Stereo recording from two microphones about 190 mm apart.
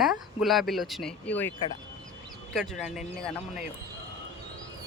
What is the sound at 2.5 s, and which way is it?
Speech, centre (ahead or behind).